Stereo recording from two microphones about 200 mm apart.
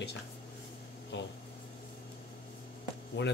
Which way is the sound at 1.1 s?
60° left (ahead or behind).